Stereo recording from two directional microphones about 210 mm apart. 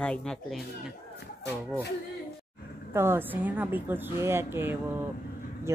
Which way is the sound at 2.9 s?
10° right (ahead or behind).